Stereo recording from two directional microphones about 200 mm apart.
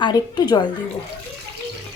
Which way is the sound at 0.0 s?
20° left (ahead or behind).